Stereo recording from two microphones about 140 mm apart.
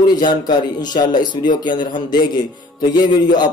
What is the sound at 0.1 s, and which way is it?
Speech, 30° left (ahead or behind).